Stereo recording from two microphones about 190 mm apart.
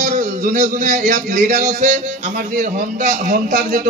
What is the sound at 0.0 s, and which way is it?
A man's voice, 40° right (ahead or behind).